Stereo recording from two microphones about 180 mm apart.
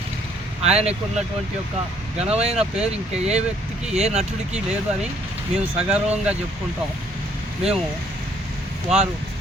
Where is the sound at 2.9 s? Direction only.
35° right (ahead or behind).